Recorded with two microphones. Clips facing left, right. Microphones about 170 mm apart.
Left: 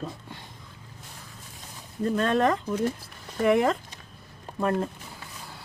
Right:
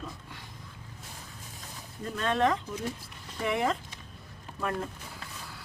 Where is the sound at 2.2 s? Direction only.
45° left (ahead or behind).